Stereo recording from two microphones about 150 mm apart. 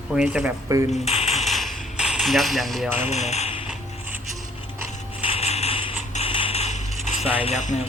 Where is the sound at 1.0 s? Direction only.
45° left (ahead or behind).